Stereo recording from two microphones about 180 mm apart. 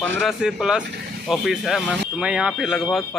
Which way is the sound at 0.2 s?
5° right (ahead or behind).